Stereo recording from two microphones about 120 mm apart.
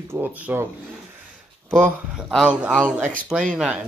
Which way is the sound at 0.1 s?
15° right (ahead or behind).